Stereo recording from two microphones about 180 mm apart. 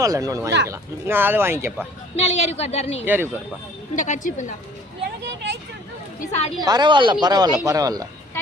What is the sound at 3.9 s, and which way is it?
Speech, 45° left (ahead or behind).